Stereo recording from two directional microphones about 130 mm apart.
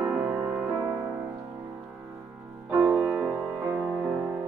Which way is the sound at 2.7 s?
10° right (ahead or behind).